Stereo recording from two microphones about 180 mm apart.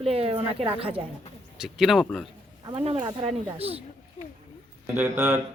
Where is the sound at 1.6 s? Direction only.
Centre (ahead or behind).